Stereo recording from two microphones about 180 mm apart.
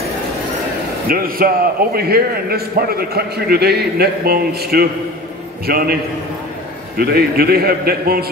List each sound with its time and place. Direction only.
1.0 s a man's voice: 55° right (ahead or behind)
7.0 s a man's voice: 60° right (ahead or behind)